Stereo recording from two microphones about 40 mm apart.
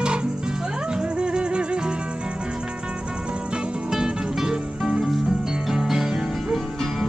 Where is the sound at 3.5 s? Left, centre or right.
Centre.